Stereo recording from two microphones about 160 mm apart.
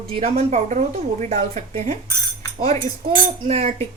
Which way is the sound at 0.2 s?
40° right (ahead or behind).